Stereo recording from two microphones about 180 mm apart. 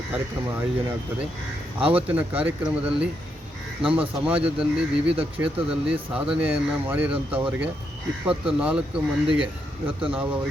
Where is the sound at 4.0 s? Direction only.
5° right (ahead or behind).